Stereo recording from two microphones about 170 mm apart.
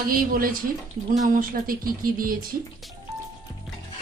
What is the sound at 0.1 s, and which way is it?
Speech, 55° right (ahead or behind).